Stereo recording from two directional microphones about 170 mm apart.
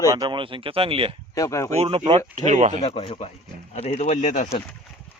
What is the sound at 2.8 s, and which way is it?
Speech, 35° left (ahead or behind).